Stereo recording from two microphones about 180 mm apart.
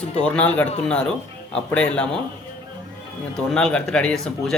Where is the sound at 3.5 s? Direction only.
5° left (ahead or behind).